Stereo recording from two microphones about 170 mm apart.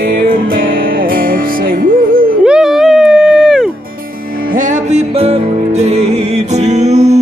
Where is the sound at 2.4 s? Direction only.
5° right (ahead or behind).